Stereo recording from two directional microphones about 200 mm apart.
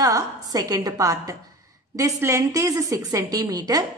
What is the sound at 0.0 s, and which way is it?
A woman's voice, 20° right (ahead or behind).